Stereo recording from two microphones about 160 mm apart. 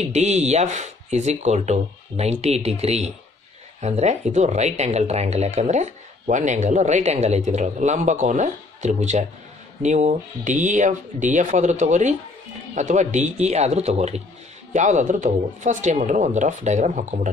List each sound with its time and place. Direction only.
0.0 s speech: 45° right (ahead or behind)